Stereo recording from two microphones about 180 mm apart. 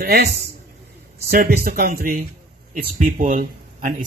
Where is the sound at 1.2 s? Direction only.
55° right (ahead or behind).